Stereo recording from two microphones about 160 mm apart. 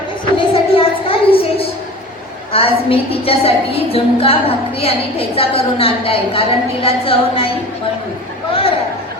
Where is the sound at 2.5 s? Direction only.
35° left (ahead or behind).